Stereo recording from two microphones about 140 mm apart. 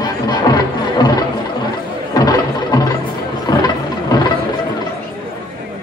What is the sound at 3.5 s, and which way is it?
Vehicle, 30° left (ahead or behind).